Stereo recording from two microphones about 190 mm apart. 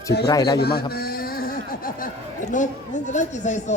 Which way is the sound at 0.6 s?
55° left (ahead or behind).